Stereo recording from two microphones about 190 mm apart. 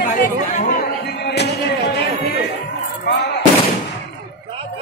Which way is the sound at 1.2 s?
60° left (ahead or behind).